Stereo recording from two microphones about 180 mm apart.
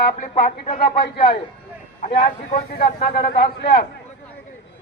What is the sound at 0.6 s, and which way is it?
Speech, 30° left (ahead or behind).